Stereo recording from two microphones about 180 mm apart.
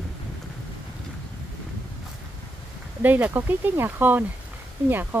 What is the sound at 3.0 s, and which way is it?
Speech, 10° right (ahead or behind).